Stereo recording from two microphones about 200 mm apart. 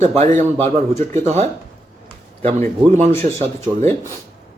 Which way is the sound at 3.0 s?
30° right (ahead or behind).